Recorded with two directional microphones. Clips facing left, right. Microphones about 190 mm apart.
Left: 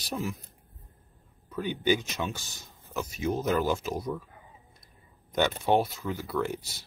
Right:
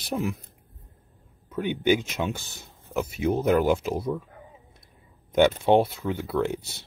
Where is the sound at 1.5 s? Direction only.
20° right (ahead or behind).